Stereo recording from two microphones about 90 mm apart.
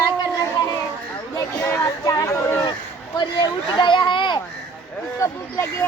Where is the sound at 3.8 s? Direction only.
65° left (ahead or behind).